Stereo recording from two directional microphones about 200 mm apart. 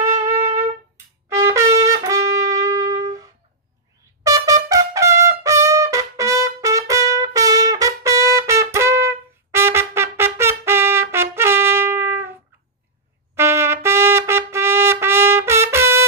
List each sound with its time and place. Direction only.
0.1 s music: 35° right (ahead or behind)
1.3 s trumpet: 15° right (ahead or behind)
6.9 s music: 15° right (ahead or behind)
13.4 s trumpet: 15° right (ahead or behind)